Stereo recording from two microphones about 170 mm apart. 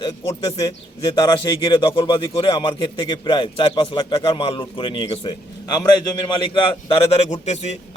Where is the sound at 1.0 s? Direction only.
25° left (ahead or behind).